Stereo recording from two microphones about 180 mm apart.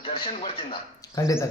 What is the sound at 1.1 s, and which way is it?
Speech, 20° left (ahead or behind).